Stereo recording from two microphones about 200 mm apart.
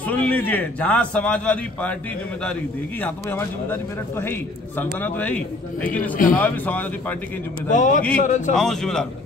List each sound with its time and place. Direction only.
0.1 s a man's voice: 10° left (ahead or behind)
3.0 s a man's voice: 10° left (ahead or behind)
7.7 s a man's voice: 40° left (ahead or behind)
8.5 s a man's voice: centre (ahead or behind)